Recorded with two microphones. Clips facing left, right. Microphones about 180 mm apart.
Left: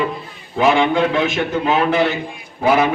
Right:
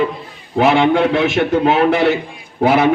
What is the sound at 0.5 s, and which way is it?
Speech, 65° right (ahead or behind).